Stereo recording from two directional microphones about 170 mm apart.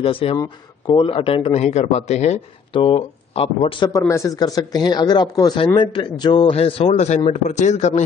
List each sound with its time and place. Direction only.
0.0 s speech: 35° left (ahead or behind)
2.7 s speech: 30° left (ahead or behind)
4.0 s speech: 15° left (ahead or behind); by 8.0 s 40° left (ahead or behind)